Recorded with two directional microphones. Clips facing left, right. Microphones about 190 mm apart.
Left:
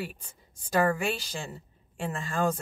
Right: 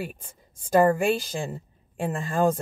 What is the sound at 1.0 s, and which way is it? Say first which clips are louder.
Speech: right 7 dB; 50° right (ahead or behind).